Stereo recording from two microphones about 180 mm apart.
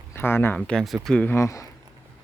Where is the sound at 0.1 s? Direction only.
15° left (ahead or behind).